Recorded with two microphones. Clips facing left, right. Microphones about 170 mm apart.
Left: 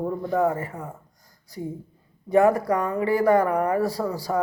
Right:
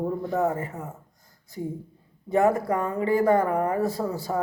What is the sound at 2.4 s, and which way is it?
Speech, 25° right (ahead or behind).